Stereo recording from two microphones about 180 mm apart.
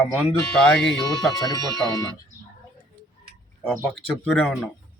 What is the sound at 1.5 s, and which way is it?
Speech, 20° left (ahead or behind).